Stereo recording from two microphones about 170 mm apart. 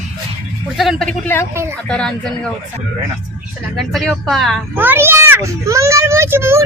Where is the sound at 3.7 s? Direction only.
Centre (ahead or behind).